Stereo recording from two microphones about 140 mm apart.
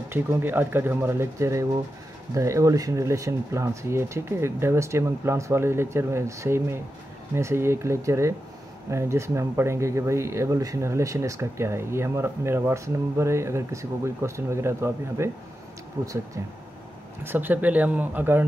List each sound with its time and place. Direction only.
0.1 s speech: 15° right (ahead or behind)
17.2 s speech: 15° right (ahead or behind)